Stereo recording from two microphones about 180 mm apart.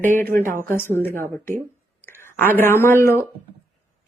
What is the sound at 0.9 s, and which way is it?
Speech, 10° left (ahead or behind).